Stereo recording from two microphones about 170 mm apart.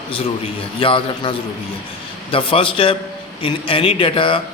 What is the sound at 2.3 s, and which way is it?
A man's voice, 30° left (ahead or behind).